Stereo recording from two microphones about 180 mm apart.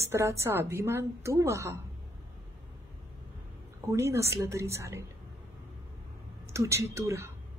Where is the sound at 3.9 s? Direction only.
15° right (ahead or behind).